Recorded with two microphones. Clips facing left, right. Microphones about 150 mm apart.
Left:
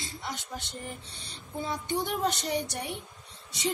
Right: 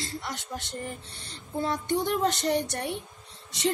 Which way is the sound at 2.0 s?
90° right.